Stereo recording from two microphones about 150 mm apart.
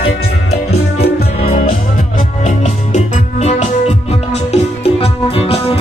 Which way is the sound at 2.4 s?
50° left (ahead or behind).